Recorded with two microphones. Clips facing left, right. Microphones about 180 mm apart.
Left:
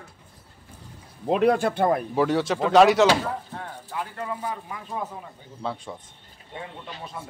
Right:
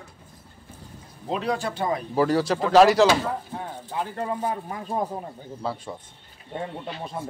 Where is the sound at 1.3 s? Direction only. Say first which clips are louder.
Left 6 dB; 55° left (ahead or behind).